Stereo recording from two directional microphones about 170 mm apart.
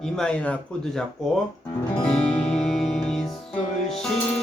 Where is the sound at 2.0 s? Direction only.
5° left (ahead or behind).